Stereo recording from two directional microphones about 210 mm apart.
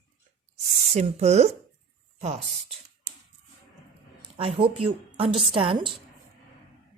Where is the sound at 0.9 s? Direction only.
30° right (ahead or behind).